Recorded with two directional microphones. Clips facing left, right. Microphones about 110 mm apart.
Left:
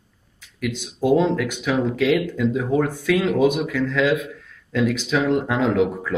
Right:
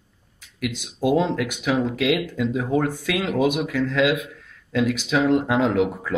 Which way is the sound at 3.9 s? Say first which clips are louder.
Left 1 dB; 10° right (ahead or behind).